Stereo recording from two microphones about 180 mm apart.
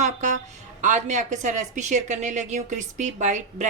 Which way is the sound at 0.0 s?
40° right (ahead or behind).